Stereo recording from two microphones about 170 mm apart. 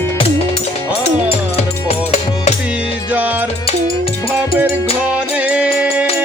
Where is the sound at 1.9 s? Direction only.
40° left (ahead or behind).